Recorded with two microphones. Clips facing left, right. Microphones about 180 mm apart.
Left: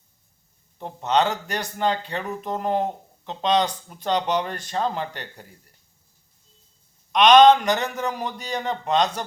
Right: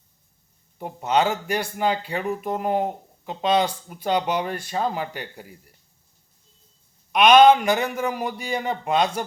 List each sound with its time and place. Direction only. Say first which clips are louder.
0.8 s speech: even; 10° right (ahead or behind)
7.1 s speech: even; 10° right (ahead or behind)